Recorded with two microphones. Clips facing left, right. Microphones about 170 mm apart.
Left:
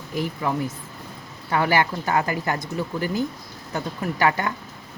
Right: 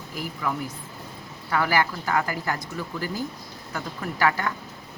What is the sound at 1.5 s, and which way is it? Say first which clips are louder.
Speech: left 3 dB; 25° left (ahead or behind).